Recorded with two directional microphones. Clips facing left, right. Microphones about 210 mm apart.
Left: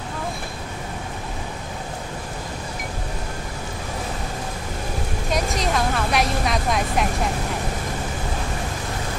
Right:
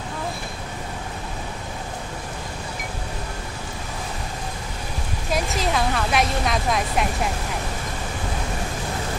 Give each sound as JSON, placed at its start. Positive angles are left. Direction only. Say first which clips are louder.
{"t": 5.3, "sound": "a woman's voice", "louder": "even", "side_deg": 0}